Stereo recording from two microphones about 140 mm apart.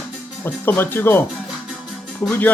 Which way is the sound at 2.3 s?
10° left (ahead or behind).